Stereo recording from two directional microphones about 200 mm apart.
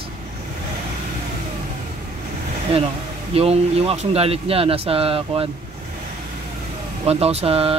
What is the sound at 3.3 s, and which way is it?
Speech, 30° right (ahead or behind).